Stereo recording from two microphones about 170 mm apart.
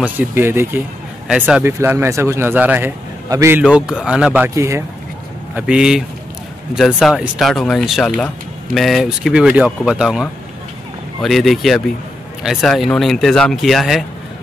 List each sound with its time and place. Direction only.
0.0 s speech: 10° right (ahead or behind)
3.7 s speech: 5° right (ahead or behind)